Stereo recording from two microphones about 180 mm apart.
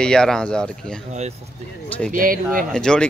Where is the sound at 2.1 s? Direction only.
50° right (ahead or behind).